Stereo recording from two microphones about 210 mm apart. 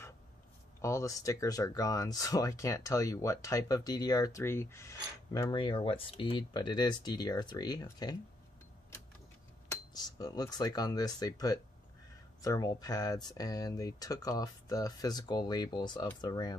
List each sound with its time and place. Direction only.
0.7 s speech: 15° left (ahead or behind)
9.7 s speech: 20° left (ahead or behind)